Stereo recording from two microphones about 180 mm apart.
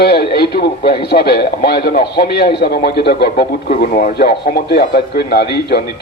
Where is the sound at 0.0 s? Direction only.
60° left (ahead or behind).